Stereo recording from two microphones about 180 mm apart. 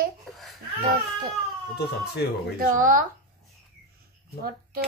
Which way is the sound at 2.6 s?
50° right (ahead or behind).